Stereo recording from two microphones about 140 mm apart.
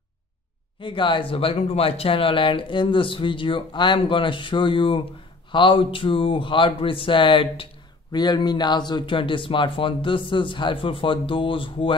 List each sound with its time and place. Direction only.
0.7 s speech: 35° left (ahead or behind)